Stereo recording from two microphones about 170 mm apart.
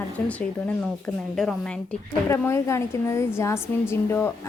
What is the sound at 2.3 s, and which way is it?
A woman's voice, 15° left (ahead or behind).